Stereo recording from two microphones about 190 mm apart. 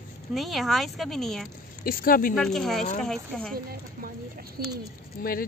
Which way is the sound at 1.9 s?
50° left (ahead or behind).